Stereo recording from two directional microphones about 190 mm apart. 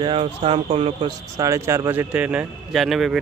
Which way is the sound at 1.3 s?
15° right (ahead or behind).